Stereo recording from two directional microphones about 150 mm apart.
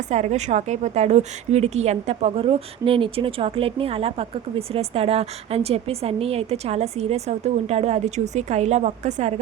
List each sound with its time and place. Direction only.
0.1 s a woman's voice: 50° right (ahead or behind)